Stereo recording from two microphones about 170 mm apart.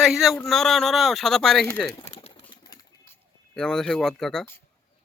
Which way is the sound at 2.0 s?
35° left (ahead or behind).